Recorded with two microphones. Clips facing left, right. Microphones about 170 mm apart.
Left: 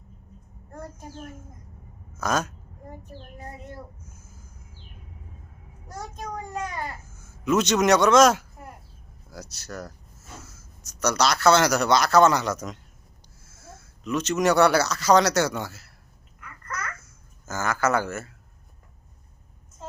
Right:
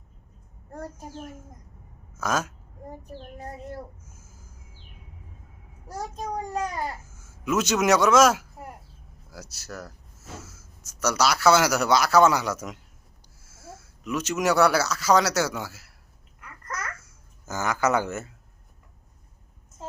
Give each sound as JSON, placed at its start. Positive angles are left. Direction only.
{"t": 0.7, "sound": "a child's voice", "side_deg": -35}
{"t": 2.1, "sound": "speech", "side_deg": -5}
{"t": 6.1, "sound": "a child's voice", "side_deg": -35}
{"t": 7.2, "sound": "speech", "side_deg": -5}
{"t": 16.4, "sound": "babbling", "side_deg": -40}
{"t": 17.4, "sound": "speech", "side_deg": -15}